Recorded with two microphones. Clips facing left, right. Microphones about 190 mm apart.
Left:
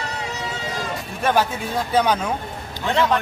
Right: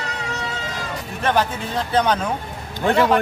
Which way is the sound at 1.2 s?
10° left (ahead or behind).